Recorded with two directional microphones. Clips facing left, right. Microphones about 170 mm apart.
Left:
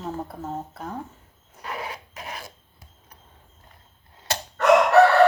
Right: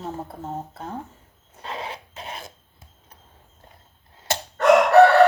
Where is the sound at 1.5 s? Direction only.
25° right (ahead or behind).